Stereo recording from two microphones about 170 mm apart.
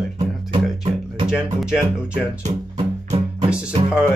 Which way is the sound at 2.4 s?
40° right (ahead or behind).